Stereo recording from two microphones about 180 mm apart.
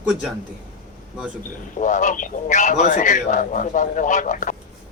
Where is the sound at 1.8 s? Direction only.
45° left (ahead or behind).